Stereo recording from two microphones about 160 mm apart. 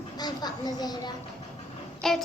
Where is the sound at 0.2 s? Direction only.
25° left (ahead or behind).